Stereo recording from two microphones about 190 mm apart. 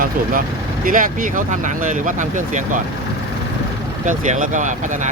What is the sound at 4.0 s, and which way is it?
Speech, 40° right (ahead or behind).